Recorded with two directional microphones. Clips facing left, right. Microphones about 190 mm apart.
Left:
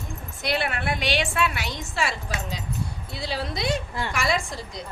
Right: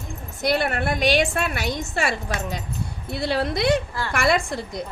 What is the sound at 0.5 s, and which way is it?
A woman's voice, 50° right (ahead or behind).